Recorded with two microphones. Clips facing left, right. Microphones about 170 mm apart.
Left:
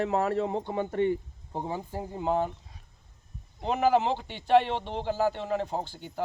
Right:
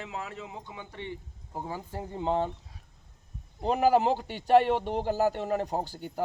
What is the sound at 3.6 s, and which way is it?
A man's voice, 40° right (ahead or behind).